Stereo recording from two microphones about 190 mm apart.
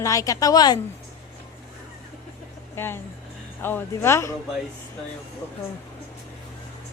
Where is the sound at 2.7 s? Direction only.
10° left (ahead or behind).